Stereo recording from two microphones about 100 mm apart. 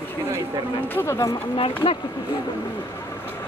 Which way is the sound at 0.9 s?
25° left (ahead or behind).